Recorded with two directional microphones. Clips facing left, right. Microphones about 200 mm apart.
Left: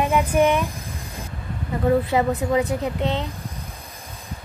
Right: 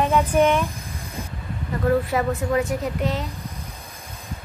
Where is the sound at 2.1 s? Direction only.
20° left (ahead or behind).